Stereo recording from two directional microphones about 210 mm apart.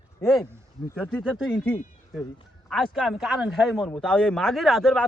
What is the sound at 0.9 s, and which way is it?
A woman's voice, 5° left (ahead or behind).